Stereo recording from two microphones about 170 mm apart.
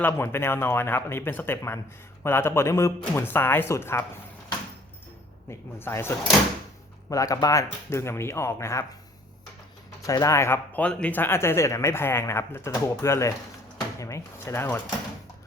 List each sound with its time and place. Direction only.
0.0 s speech: 15° left (ahead or behind)
5.5 s speech: 15° left (ahead or behind)
10.0 s speech: 20° left (ahead or behind)